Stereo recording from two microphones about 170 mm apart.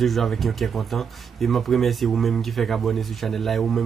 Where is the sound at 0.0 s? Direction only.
Centre (ahead or behind).